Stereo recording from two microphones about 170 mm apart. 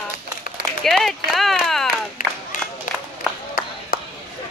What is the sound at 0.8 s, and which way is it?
Run, centre (ahead or behind).